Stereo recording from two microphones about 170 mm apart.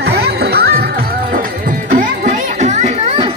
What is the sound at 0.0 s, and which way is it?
Music, 70° right (ahead or behind).